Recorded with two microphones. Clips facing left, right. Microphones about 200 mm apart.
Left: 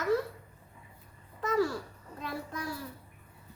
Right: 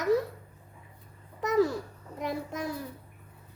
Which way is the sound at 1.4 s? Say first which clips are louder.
Right 4 dB; 20° right (ahead or behind).